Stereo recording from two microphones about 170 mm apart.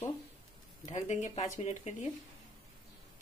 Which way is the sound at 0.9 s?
45° left (ahead or behind).